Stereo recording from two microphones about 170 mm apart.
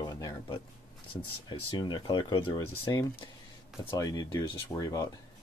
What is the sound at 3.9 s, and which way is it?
Speech, 20° left (ahead or behind).